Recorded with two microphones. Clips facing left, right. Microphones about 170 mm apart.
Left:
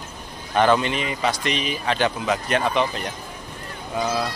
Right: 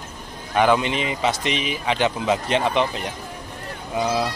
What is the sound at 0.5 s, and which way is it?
A man's voice, 10° right (ahead or behind).